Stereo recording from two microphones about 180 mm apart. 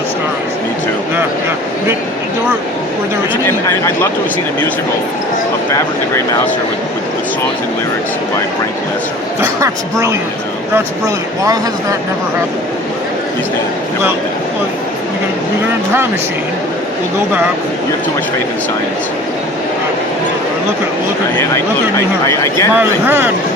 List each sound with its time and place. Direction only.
3.4 s speech: 15° left (ahead or behind)
9.4 s speech: 15° right (ahead or behind)
22.3 s speech: 15° left (ahead or behind)
22.8 s speech: 10° right (ahead or behind)